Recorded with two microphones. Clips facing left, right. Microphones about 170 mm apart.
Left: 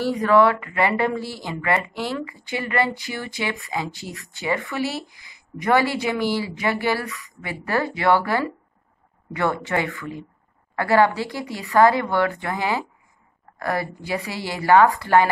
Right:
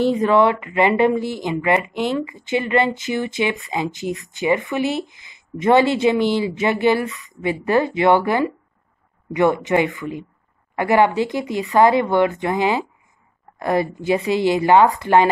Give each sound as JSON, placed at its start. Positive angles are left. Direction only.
{"t": 0.0, "sound": "speech", "side_deg": -20}